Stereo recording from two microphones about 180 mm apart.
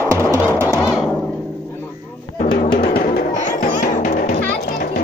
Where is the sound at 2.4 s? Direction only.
45° left (ahead or behind).